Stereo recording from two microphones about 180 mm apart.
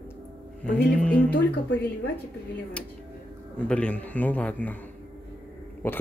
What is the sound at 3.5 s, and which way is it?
Speech, 5° left (ahead or behind).